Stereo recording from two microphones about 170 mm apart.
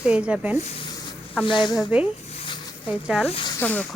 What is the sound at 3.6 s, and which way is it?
Speech, 10° left (ahead or behind).